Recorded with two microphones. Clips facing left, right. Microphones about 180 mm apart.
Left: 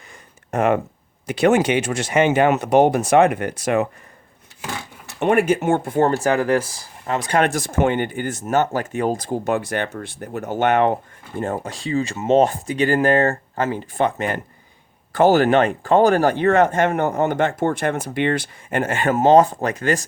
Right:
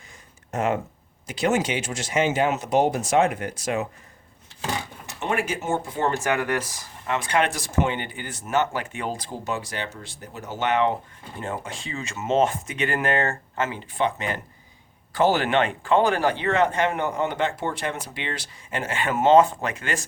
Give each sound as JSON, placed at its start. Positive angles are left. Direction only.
{"t": 0.1, "sound": "a sound", "side_deg": 60}
{"t": 1.3, "sound": "speech", "side_deg": 60}
{"t": 5.2, "sound": "speech", "side_deg": 55}
{"t": 6.1, "sound": "speech", "side_deg": 35}